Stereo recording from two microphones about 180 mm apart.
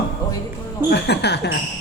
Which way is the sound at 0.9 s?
70° left (ahead or behind).